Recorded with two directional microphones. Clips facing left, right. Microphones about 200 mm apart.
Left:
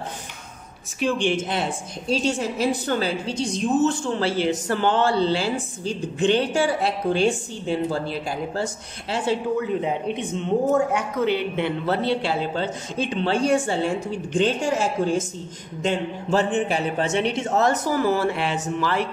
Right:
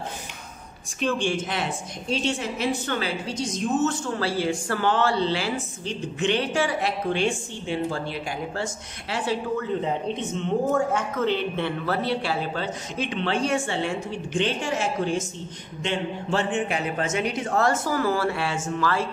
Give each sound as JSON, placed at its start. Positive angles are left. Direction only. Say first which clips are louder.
{"t": 0.9, "sound": "speech", "louder": "left 3 dB", "side_deg": 15}
{"t": 1.5, "sound": "a woman's voice", "louder": "left 3 dB", "side_deg": 35}
{"t": 9.1, "sound": "a woman's voice", "louder": "left 3 dB", "side_deg": 25}
{"t": 9.8, "sound": "a woman's voice", "louder": "left 2 dB", "side_deg": 10}